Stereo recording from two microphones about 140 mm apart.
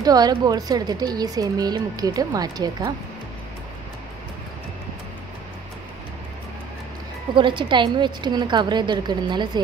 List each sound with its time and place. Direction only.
0.0 s a woman's voice: 30° right (ahead or behind)
7.3 s a woman's voice: 35° right (ahead or behind)